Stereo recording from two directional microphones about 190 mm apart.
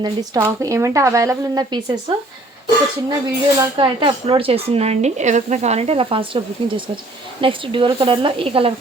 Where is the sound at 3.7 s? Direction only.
25° right (ahead or behind).